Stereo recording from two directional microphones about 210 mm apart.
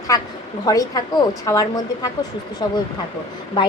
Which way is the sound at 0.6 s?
15° left (ahead or behind).